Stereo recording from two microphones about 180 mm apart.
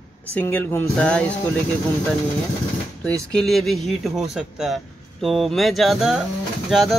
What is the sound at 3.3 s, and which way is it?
Speech, centre (ahead or behind).